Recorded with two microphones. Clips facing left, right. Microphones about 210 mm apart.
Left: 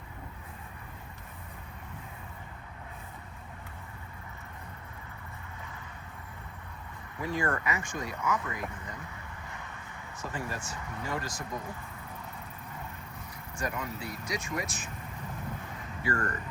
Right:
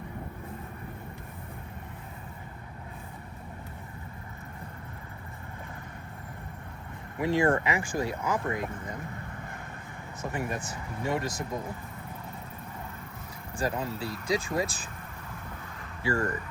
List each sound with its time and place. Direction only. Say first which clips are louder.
7.2 s speech: right 7 dB; 25° right (ahead or behind)
10.2 s speech: right 4 dB; 20° right (ahead or behind)
13.6 s speech: right 5 dB; 30° right (ahead or behind)
16.0 s speech: right 4 dB; 25° right (ahead or behind)